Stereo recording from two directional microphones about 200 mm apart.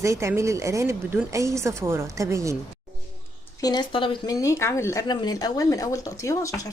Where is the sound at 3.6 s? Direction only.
20° left (ahead or behind).